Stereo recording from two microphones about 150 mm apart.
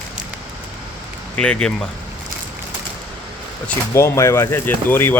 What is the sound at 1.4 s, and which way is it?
Speech, 5° left (ahead or behind).